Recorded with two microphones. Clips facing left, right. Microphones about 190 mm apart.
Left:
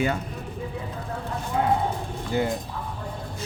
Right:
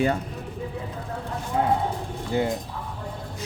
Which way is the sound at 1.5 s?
35° right (ahead or behind).